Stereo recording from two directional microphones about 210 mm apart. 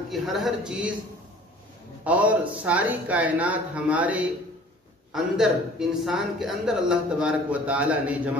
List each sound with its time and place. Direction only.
0.1 s speech: centre (ahead or behind)
2.0 s a man's voice: 5° right (ahead or behind)